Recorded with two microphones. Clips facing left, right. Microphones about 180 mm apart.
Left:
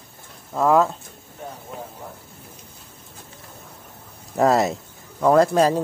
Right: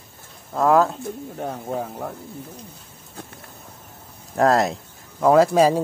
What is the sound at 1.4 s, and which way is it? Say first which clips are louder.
Speech: right 7 dB; 70° right (ahead or behind).